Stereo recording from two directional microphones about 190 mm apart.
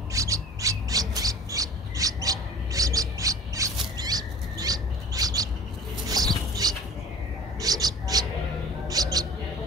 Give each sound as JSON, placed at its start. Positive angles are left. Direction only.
{"t": 0.1, "sound": "squawk", "side_deg": -15}
{"t": 6.0, "sound": "music", "side_deg": -20}
{"t": 7.6, "sound": "a sound", "side_deg": -20}
{"t": 8.8, "sound": "mouse", "side_deg": -20}